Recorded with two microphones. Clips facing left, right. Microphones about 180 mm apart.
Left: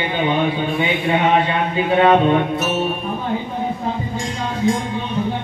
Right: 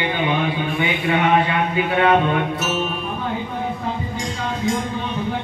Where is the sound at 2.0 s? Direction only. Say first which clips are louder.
Left 4 dB; 30° left (ahead or behind).